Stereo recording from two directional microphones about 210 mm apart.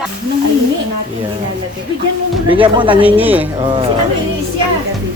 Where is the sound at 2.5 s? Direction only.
25° right (ahead or behind).